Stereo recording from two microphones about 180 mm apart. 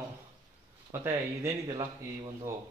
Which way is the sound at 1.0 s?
15° right (ahead or behind).